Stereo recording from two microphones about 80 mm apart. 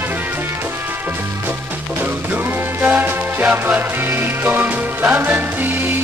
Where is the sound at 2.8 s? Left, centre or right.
Right.